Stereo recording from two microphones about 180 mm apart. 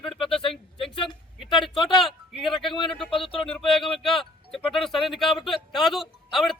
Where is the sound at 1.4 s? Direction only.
Centre (ahead or behind).